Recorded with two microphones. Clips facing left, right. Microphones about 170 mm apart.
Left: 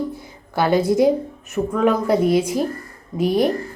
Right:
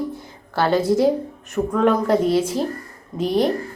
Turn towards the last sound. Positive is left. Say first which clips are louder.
# left 1 dB
turn(degrees=10)  # may be behind; listen again after turning